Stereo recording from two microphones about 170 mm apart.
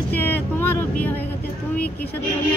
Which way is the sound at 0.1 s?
10° left (ahead or behind).